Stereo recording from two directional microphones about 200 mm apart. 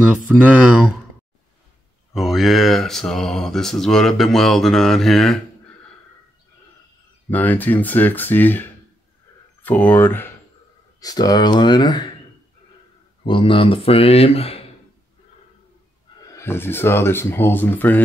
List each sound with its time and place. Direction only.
0.3 s speech: 5° right (ahead or behind)
2.1 s speech: centre (ahead or behind)
7.2 s speech: 10° left (ahead or behind)
13.2 s speech: 25° left (ahead or behind)
16.3 s speech: 10° left (ahead or behind)